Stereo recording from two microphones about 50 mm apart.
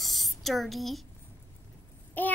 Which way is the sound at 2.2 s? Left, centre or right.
Left.